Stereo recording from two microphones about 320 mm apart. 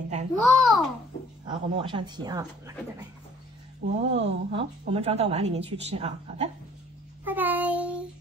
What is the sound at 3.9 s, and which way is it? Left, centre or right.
Speech, centre.